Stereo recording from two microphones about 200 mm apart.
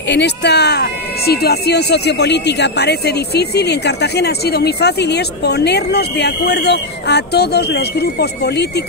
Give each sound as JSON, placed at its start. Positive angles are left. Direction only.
{"t": 0.1, "sound": "speech", "side_deg": 55}